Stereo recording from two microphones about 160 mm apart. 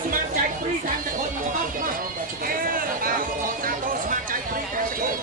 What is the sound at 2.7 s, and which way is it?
Chatter, 65° right (ahead or behind).